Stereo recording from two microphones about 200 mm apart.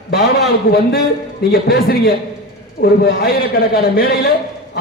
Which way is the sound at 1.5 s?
50° left (ahead or behind).